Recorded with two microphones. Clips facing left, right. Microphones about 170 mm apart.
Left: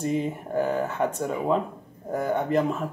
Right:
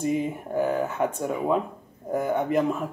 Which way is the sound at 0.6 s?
5° right (ahead or behind).